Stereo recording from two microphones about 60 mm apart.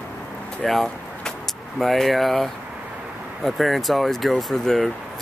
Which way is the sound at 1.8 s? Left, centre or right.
Centre.